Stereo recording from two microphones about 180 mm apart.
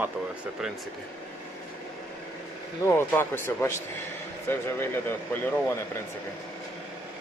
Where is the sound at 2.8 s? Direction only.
15° left (ahead or behind).